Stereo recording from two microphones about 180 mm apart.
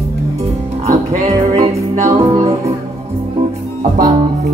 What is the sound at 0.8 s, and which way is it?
Music, 35° right (ahead or behind).